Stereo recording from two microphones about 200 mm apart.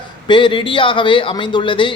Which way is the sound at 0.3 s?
25° left (ahead or behind).